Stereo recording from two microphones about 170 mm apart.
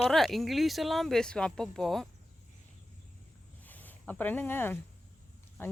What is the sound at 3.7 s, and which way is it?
Speech, 10° left (ahead or behind).